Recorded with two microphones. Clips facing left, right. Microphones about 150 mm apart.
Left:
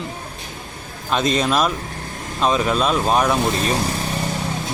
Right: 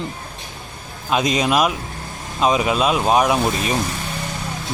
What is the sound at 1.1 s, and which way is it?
Speech, 10° right (ahead or behind).